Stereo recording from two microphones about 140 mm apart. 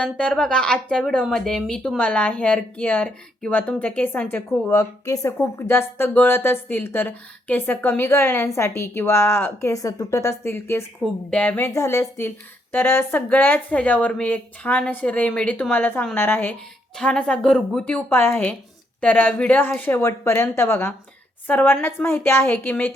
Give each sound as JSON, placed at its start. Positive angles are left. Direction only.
{"t": 0.0, "sound": "speech", "side_deg": 5}
{"t": 11.0, "sound": "speech", "side_deg": 5}